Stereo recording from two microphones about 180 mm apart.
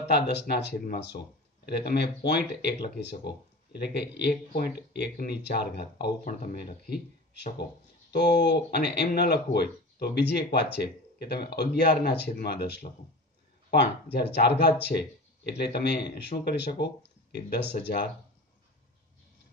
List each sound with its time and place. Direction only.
0.1 s speech: 70° left (ahead or behind)
6.2 s speech: 55° left (ahead or behind)
8.1 s speech: 65° left (ahead or behind)